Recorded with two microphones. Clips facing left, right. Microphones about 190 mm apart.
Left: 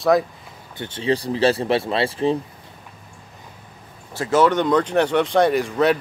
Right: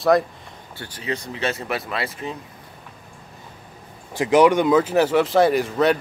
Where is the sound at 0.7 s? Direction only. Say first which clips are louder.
Left 7 dB; 25° left (ahead or behind).